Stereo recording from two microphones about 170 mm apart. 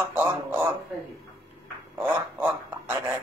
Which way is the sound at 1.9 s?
10° right (ahead or behind).